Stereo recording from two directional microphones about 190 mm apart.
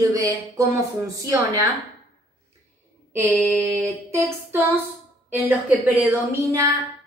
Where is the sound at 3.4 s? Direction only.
15° right (ahead or behind).